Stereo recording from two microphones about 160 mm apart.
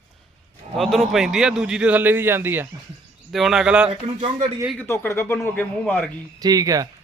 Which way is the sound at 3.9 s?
35° right (ahead or behind).